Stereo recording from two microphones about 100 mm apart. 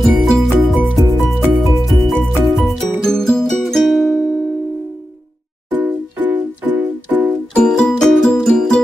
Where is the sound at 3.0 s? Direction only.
5° left (ahead or behind).